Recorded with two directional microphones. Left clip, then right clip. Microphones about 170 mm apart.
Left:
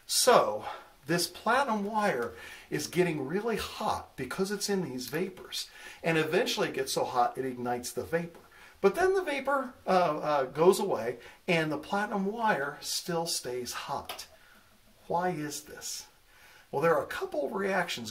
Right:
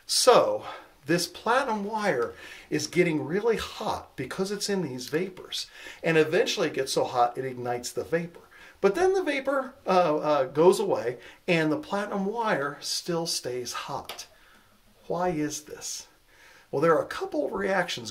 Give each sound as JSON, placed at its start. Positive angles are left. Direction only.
{"t": 0.0, "sound": "speech", "side_deg": -35}